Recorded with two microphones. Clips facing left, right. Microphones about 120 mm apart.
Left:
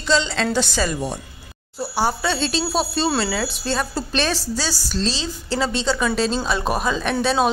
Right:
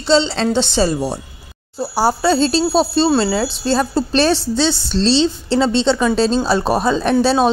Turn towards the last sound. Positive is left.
turn(degrees=-30)  # may be behind; listen again after turning